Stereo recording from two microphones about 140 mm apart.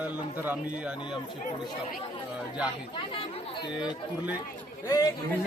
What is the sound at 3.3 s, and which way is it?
Speech, 35° left (ahead or behind).